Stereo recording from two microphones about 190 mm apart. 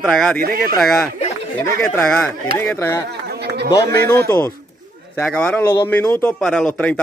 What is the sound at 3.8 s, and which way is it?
Speech, 55° right (ahead or behind).